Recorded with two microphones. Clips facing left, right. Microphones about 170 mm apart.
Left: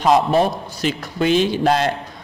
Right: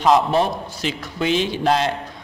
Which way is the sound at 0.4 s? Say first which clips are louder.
Left 2 dB; 45° left (ahead or behind).